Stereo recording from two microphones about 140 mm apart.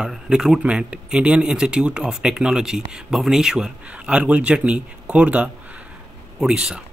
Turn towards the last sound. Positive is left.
turn(degrees=-5)  # may be behind; listen again after turning